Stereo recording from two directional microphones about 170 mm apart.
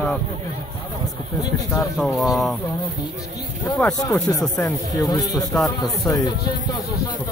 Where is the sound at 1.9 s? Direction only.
Centre (ahead or behind).